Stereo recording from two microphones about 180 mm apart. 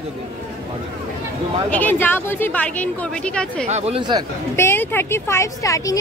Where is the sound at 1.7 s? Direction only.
10° left (ahead or behind).